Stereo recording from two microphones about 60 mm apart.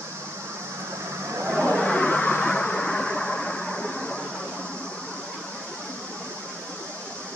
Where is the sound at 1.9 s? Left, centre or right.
Centre.